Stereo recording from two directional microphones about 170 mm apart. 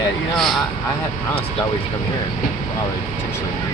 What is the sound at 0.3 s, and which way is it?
Speech, centre (ahead or behind).